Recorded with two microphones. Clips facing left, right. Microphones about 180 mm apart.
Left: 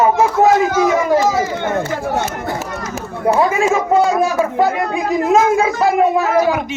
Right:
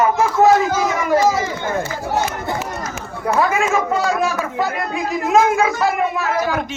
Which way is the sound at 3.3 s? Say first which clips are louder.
Left 3 dB; 30° left (ahead or behind).